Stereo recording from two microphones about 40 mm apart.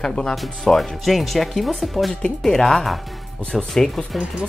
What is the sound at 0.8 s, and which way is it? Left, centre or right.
Speech, centre.